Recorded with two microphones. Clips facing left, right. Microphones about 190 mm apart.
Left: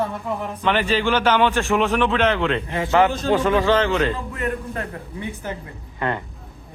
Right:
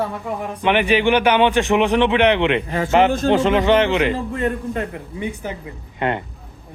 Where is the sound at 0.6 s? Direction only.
15° right (ahead or behind).